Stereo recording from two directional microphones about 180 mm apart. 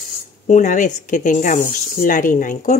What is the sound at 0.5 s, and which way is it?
Speech, 45° left (ahead or behind).